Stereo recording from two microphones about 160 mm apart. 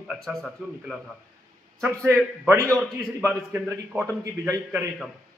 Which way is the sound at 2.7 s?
10° left (ahead or behind).